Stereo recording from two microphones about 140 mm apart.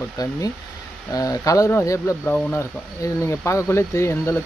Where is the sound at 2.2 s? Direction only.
10° left (ahead or behind).